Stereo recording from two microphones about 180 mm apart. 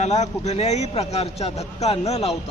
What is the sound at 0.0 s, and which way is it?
A man's voice, 40° left (ahead or behind).